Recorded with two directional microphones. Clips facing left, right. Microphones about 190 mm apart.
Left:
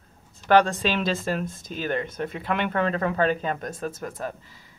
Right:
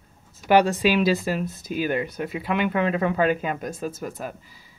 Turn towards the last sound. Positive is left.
turn(degrees=-5)  # may be behind; listen again after turning